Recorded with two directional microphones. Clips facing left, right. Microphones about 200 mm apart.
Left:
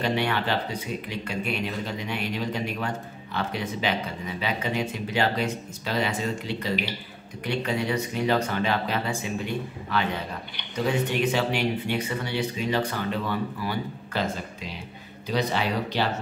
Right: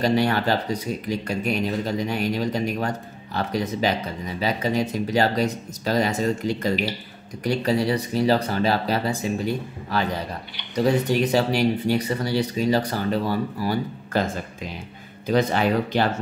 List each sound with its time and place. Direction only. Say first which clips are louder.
0.0 s speech: right 5 dB; 40° right (ahead or behind)